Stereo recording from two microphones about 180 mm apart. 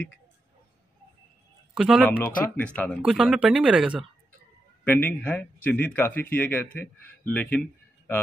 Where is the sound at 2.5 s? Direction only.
10° left (ahead or behind).